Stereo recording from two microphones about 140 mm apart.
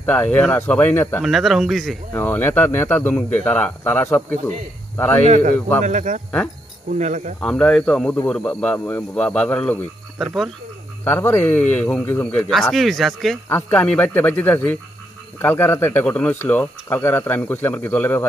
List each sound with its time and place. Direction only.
0.0 s speech: 10° left (ahead or behind)
1.2 s speech: centre (ahead or behind)
2.1 s speech: 15° left (ahead or behind)
5.2 s speech: 65° right (ahead or behind)
7.4 s speech: 5° left (ahead or behind)
11.1 s speech: 15° left (ahead or behind); by 13.4 s centre (ahead or behind)
13.5 s speech: 15° left (ahead or behind)